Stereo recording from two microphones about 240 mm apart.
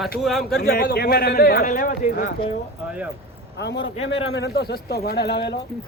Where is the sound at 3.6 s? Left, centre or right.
Left.